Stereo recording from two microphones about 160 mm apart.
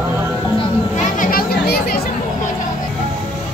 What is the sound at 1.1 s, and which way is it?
Chatter, 65° left (ahead or behind).